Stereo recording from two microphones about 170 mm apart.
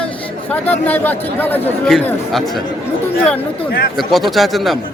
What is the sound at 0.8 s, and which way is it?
Speech, 10° left (ahead or behind).